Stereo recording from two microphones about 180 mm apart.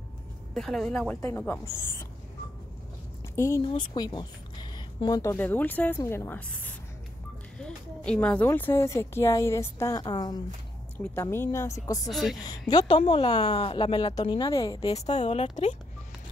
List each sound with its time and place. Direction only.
0.6 s a woman's voice: centre (ahead or behind)
3.3 s a woman's voice: 15° left (ahead or behind)
12.1 s a woman's voice: centre (ahead or behind)
12.4 s a woman's voice: 20° left (ahead or behind)
15.0 s speech: 35° left (ahead or behind)